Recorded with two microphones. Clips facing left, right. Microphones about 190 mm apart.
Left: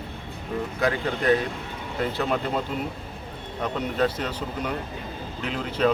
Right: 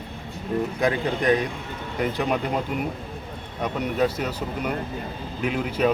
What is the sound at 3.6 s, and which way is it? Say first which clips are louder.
Speech: right 1 dB; 10° right (ahead or behind).